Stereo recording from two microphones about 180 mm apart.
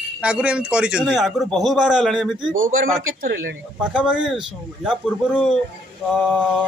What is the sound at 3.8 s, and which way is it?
Speech, 5° right (ahead or behind).